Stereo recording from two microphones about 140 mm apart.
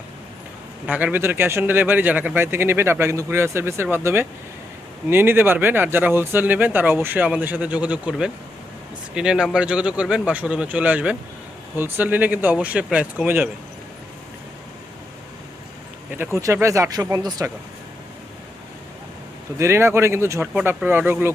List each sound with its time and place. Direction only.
0.9 s speech: 10° right (ahead or behind)
16.1 s speech: 20° right (ahead or behind)
19.5 s speech: 20° right (ahead or behind)